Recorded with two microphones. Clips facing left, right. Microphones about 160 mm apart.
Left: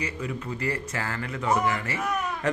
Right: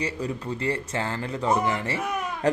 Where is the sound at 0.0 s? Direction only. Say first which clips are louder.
Right 3 dB; 30° right (ahead or behind).